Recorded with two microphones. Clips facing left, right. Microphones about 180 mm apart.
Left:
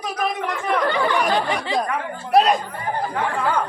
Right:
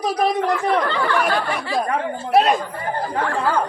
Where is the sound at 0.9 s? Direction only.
15° left (ahead or behind).